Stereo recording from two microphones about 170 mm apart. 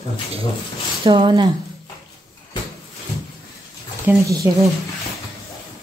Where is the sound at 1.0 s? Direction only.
30° right (ahead or behind).